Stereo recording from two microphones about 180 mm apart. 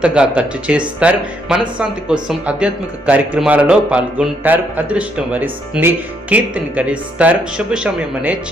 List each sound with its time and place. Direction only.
0.0 s speech: 5° right (ahead or behind)